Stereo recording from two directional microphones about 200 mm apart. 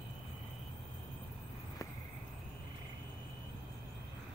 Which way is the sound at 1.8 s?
15° left (ahead or behind).